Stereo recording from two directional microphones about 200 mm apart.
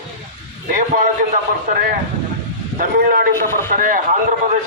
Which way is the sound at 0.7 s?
40° right (ahead or behind).